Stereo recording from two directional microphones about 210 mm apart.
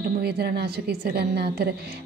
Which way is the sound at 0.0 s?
50° right (ahead or behind).